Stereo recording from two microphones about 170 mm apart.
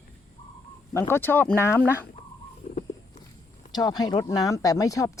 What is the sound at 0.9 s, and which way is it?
Speech, 15° left (ahead or behind).